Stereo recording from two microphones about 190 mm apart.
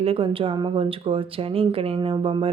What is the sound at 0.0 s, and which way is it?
Speech, 30° right (ahead or behind).